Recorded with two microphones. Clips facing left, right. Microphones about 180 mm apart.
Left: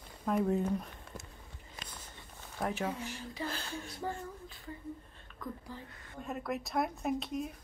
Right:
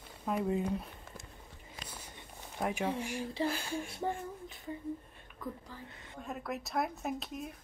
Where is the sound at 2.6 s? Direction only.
10° right (ahead or behind).